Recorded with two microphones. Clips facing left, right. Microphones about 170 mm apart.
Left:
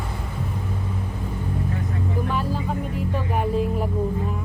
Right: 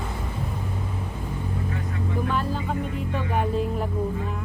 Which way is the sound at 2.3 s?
5° left (ahead or behind).